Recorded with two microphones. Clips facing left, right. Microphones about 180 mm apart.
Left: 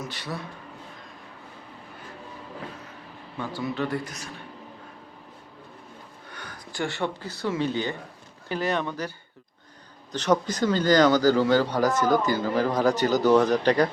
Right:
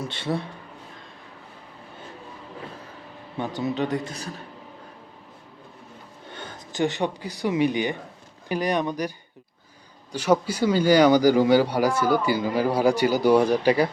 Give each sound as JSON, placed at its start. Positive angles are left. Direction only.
{"t": 0.0, "sound": "a man's voice", "side_deg": -25}
{"t": 3.3, "sound": "a man's voice", "side_deg": -20}
{"t": 6.2, "sound": "a man's voice", "side_deg": -25}